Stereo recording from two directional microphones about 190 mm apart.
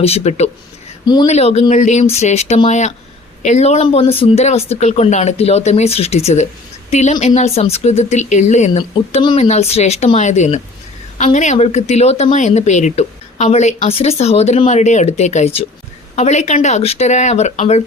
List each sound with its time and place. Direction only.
0.0 s a woman's voice: 35° left (ahead or behind)
1.0 s speech: 20° left (ahead or behind)
1.3 s a woman's voice: 35° left (ahead or behind)